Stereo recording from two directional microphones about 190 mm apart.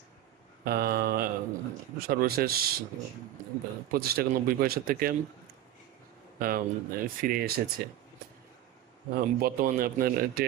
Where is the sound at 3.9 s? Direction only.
55° right (ahead or behind).